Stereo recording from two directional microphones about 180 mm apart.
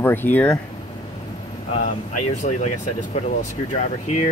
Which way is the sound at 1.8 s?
40° left (ahead or behind).